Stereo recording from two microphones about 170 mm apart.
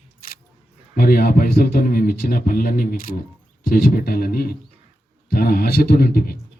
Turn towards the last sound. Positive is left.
turn(degrees=60)  # may be behind; listen again after turning